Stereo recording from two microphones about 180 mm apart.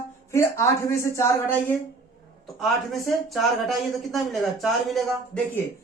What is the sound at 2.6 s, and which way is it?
Speech, centre (ahead or behind).